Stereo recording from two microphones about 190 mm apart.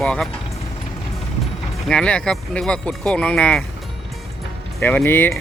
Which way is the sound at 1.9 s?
5° left (ahead or behind).